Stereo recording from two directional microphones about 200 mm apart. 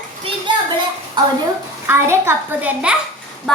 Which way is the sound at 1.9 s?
10° right (ahead or behind).